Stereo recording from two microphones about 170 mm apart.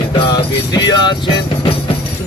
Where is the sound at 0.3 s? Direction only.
20° left (ahead or behind).